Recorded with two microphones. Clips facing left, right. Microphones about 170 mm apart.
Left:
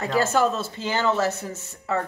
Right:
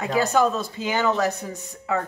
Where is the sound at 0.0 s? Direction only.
15° right (ahead or behind).